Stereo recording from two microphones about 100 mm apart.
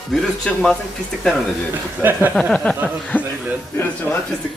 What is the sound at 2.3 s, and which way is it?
Speech, 10° left (ahead or behind).